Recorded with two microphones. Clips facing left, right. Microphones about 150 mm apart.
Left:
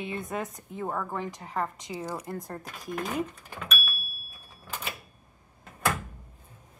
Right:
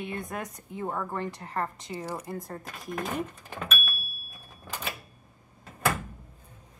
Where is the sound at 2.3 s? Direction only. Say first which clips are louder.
Even; centre (ahead or behind).